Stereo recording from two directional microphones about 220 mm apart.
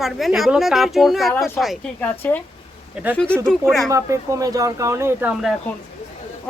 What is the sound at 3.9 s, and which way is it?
Speech, 15° right (ahead or behind).